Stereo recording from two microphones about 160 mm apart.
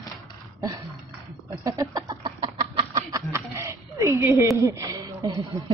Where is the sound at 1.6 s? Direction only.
20° right (ahead or behind).